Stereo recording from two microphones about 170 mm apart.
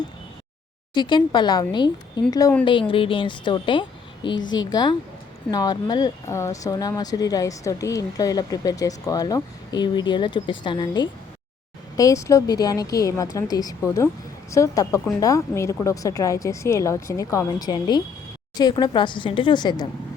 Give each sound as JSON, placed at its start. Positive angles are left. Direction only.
{"t": 0.9, "sound": "a woman's voice", "side_deg": 25}